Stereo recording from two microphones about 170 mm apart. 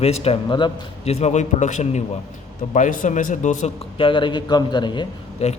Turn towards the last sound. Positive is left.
turn(degrees=40)  # may be behind; listen again after turning